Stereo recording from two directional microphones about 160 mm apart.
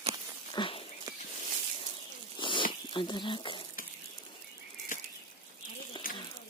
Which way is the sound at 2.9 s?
30° left (ahead or behind).